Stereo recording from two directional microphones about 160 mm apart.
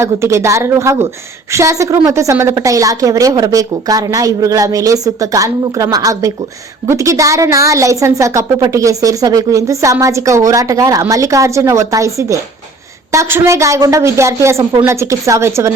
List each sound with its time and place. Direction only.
0.0 s a woman's voice: 20° right (ahead or behind)